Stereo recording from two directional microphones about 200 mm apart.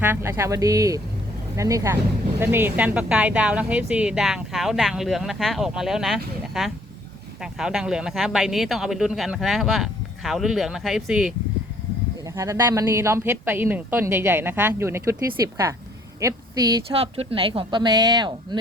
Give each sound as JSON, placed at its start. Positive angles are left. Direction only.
{"t": 0.0, "sound": "a woman's voice", "side_deg": -10}
{"t": 12.3, "sound": "speech", "side_deg": -15}
{"t": 17.0, "sound": "speech", "side_deg": -30}